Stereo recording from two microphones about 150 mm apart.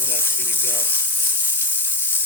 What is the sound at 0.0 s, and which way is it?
Sizzle, 15° left (ahead or behind).